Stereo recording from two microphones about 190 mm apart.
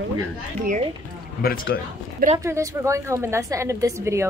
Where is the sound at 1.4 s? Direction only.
50° left (ahead or behind).